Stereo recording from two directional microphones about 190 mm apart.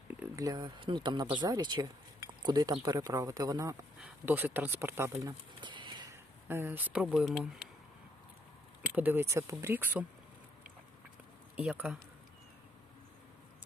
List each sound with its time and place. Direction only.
0.1 s speech: 15° right (ahead or behind)
4.0 s speech: 10° right (ahead or behind)
5.5 s a sound: 25° right (ahead or behind); by 7.7 s centre (ahead or behind)
8.9 s speech: 10° right (ahead or behind)
11.5 s speech: 5° right (ahead or behind)